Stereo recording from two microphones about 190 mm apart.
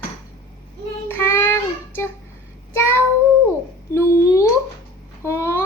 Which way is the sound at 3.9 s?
15° left (ahead or behind).